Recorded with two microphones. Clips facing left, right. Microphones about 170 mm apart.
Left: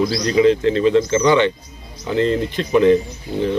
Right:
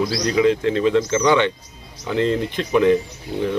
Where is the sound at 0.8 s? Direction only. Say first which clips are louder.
Left 2 dB; 15° left (ahead or behind).